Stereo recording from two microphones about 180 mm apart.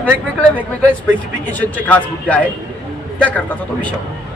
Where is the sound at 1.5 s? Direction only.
10° left (ahead or behind).